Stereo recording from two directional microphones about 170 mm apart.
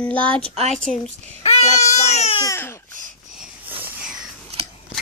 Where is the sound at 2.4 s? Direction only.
15° left (ahead or behind).